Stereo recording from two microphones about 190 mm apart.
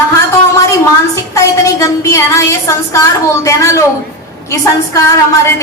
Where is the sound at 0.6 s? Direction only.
15° left (ahead or behind).